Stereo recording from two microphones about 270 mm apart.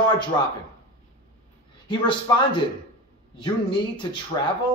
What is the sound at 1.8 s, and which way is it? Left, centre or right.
A man's voice, centre.